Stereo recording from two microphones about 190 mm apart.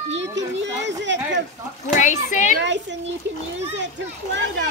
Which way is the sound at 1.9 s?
40° left (ahead or behind).